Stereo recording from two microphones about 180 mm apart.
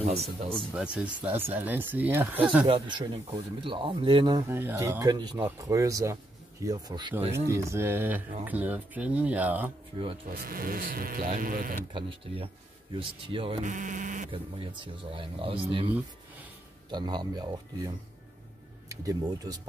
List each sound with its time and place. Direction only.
0.0 s speech: 35° right (ahead or behind)
0.6 s speech: 5° right (ahead or behind)
2.7 s speech: 30° right (ahead or behind)
4.5 s speech: 15° right (ahead or behind); by 7.3 s 30° right (ahead or behind)
7.4 s speech: 15° right (ahead or behind)
10.2 s speech: 50° right (ahead or behind)
11.9 s speech: 30° right (ahead or behind)
13.7 s speech: 45° right (ahead or behind)
14.3 s speech: 30° right (ahead or behind)
16.9 s speech: 25° right (ahead or behind)